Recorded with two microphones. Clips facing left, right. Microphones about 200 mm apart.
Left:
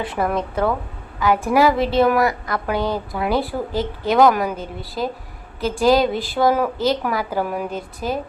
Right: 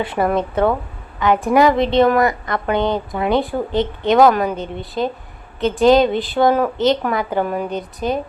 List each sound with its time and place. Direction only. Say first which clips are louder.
0.2 s a woman's voice: right 4 dB; centre (ahead or behind)
2.8 s speech: right 3 dB; 20° right (ahead or behind)
3.2 s a woman's voice: right 3 dB; 5° left (ahead or behind)